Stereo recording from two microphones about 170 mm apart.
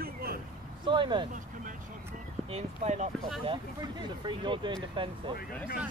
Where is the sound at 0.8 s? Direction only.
30° right (ahead or behind).